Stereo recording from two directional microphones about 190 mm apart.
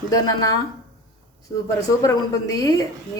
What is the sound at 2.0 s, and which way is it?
Speech, 20° left (ahead or behind).